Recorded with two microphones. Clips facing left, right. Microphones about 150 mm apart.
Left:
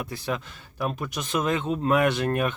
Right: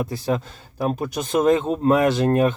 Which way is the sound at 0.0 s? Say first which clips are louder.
Right 7 dB; 40° right (ahead or behind).